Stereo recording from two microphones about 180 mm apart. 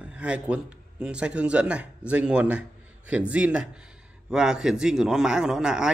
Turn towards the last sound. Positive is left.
turn(degrees=-5)  # may be behind; listen again after turning